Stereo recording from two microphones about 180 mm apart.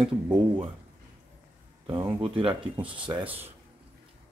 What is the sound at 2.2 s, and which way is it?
Speech, 30° right (ahead or behind).